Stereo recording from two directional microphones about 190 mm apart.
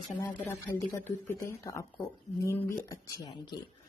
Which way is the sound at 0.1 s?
15° left (ahead or behind).